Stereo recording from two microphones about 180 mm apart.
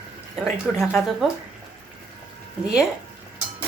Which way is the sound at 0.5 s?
Centre (ahead or behind).